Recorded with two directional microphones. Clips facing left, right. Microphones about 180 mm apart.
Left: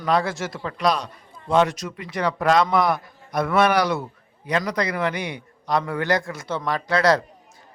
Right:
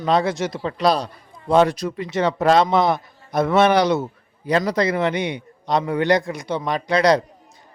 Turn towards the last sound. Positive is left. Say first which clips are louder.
# right 3 dB
turn(degrees=-20)  # may be behind; listen again after turning